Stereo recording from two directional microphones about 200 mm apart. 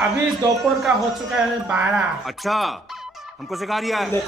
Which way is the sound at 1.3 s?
5° right (ahead or behind).